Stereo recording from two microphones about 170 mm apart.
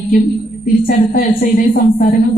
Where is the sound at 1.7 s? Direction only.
60° left (ahead or behind).